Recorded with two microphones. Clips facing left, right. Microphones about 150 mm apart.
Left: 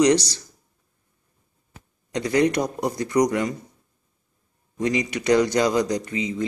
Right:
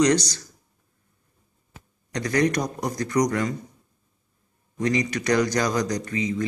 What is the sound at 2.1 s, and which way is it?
Speech, 25° left (ahead or behind).